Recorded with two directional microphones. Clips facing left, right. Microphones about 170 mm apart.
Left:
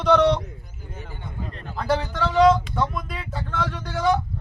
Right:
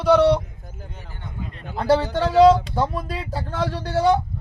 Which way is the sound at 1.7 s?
30° right (ahead or behind).